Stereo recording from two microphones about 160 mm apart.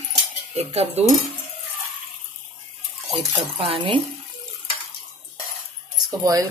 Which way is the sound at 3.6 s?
35° right (ahead or behind).